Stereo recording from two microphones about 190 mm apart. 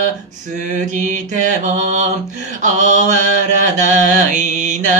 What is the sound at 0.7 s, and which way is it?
Mantra, 40° right (ahead or behind).